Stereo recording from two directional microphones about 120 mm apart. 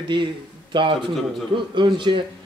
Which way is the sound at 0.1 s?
40° right (ahead or behind).